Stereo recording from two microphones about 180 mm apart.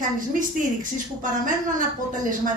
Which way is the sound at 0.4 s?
45° right (ahead or behind).